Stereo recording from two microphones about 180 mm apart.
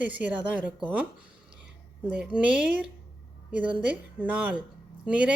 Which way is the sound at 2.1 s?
5° right (ahead or behind).